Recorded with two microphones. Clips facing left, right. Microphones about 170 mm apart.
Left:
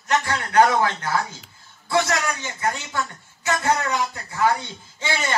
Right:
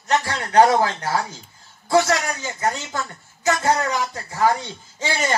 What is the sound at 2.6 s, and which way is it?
A woman's voice, 40° right (ahead or behind).